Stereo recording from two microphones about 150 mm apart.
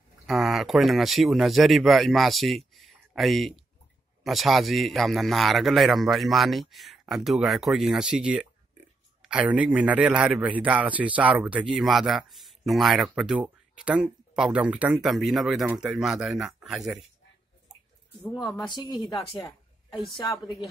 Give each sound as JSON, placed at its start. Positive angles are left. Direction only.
{"t": 0.3, "sound": "a man's voice", "side_deg": 0}
{"t": 18.6, "sound": "speech", "side_deg": 30}
{"t": 19.9, "sound": "a woman's voice", "side_deg": 30}